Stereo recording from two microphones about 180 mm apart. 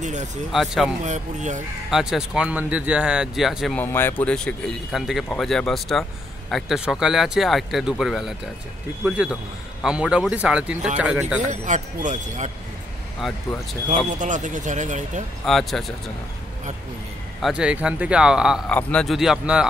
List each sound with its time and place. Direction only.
0.0 s speech: 40° right (ahead or behind)
0.5 s speech: centre (ahead or behind)
1.0 s speech: 40° right (ahead or behind)
1.9 s speech: centre (ahead or behind)
3.8 s speech: 10° left (ahead or behind); by 11.4 s 5° right (ahead or behind)
11.4 s speech: 45° right (ahead or behind)
13.8 s speech: 45° right (ahead or behind)
15.4 s speech: centre (ahead or behind)
17.4 s speech: 5° right (ahead or behind)
18.7 s speech: 5° left (ahead or behind)